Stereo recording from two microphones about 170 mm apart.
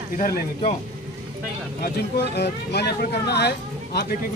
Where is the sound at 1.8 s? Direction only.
80° left.